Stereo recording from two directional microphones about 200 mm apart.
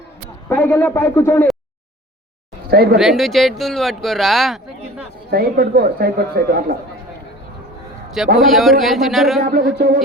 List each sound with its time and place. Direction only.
0.4 s a man's voice: 10° left (ahead or behind)
2.6 s speech: 50° right (ahead or behind)
3.0 s speech: centre (ahead or behind)
5.3 s speech: 50° right (ahead or behind)
8.4 s speech: centre (ahead or behind)
9.4 s speech: 50° right (ahead or behind)